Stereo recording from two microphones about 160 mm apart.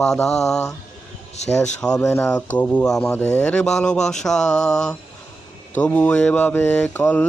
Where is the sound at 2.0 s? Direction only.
15° left (ahead or behind).